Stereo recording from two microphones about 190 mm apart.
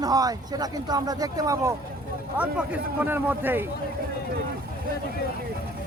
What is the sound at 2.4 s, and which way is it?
Speech, 5° right (ahead or behind).